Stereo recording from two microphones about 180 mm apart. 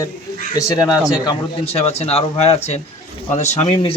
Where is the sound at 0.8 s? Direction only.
20° left (ahead or behind).